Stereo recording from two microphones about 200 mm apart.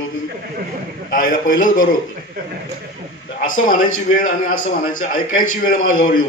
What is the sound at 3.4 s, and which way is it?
A man's voice, 40° left (ahead or behind).